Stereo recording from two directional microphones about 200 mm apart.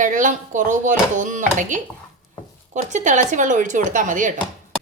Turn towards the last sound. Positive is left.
turn(degrees=-40)  # may be behind; listen again after turning